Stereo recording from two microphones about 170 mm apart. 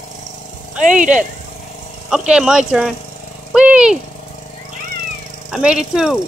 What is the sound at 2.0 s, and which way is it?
Speech, 5° right (ahead or behind).